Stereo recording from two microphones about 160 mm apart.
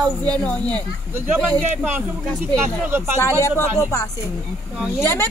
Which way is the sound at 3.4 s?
20° left (ahead or behind).